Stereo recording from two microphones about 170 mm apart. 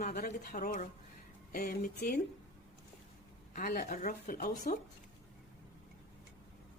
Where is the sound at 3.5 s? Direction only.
60° left (ahead or behind).